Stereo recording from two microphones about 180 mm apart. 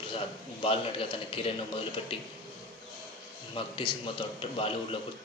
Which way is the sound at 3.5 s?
30° left (ahead or behind).